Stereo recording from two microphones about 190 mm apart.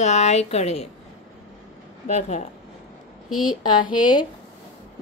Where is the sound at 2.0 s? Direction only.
40° left (ahead or behind).